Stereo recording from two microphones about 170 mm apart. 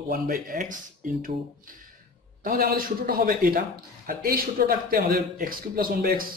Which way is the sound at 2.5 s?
60° right (ahead or behind).